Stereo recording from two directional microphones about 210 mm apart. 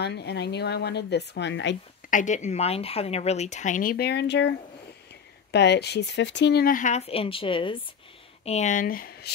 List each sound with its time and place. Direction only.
0.0 s speech: 50° left (ahead or behind)
2.0 s a woman's voice: 35° left (ahead or behind)